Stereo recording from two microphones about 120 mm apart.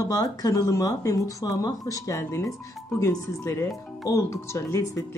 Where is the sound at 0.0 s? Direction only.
30° left (ahead or behind).